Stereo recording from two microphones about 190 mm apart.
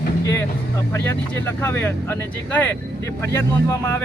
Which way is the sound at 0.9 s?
10° left (ahead or behind).